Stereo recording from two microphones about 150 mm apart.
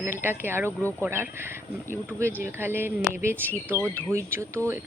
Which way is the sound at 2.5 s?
15° right (ahead or behind).